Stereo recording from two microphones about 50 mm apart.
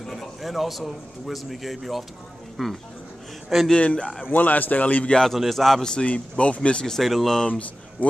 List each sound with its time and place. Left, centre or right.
0.0 s a man's voice: centre
3.7 s speech: centre
4.2 s a man's voice: left
5.1 s a man's voice: centre
6.0 s speech: left
6.9 s a man's voice: centre
7.4 s speech: left